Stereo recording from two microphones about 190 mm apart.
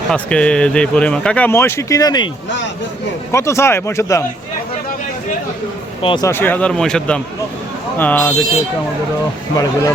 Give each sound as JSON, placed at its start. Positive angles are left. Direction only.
{"t": 0.1, "sound": "speech", "side_deg": 5}
{"t": 3.3, "sound": "speech", "side_deg": 15}
{"t": 6.0, "sound": "speech", "side_deg": 25}
{"t": 6.2, "sound": "speech", "side_deg": 10}